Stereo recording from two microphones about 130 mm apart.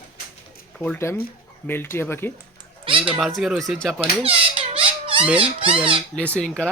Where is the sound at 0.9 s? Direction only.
20° left (ahead or behind).